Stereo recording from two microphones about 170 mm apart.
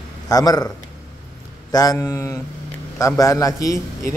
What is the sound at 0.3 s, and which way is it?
Speech, 20° left (ahead or behind).